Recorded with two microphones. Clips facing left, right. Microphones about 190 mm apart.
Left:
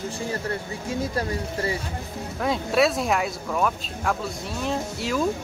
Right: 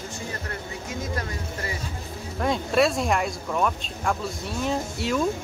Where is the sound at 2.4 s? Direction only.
Centre (ahead or behind).